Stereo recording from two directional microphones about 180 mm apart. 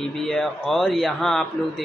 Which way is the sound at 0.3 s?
5° left (ahead or behind).